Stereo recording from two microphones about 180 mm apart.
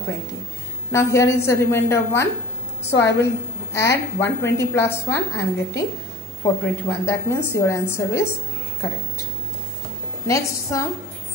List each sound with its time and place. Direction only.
0.9 s a woman's voice: 15° left (ahead or behind)
10.2 s a woman's voice: 15° left (ahead or behind)